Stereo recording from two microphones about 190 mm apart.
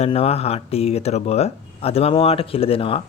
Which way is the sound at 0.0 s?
30° left (ahead or behind).